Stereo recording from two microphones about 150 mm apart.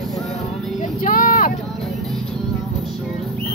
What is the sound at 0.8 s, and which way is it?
Vehicle, 60° left (ahead or behind).